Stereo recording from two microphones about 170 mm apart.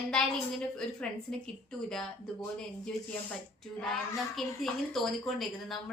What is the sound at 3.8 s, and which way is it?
A woman's voice, centre (ahead or behind).